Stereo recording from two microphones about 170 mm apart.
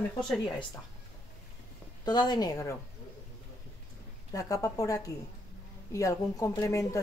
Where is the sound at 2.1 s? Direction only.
25° left (ahead or behind).